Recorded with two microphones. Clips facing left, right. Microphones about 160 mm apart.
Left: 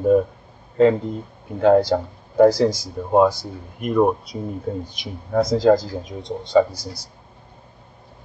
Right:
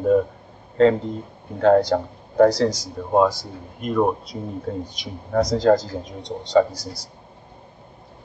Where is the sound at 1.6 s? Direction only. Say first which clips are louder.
Left 1 dB; 5° left (ahead or behind).